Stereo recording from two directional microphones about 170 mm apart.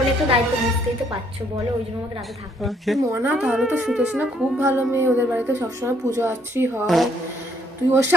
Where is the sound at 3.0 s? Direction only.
15° right (ahead or behind).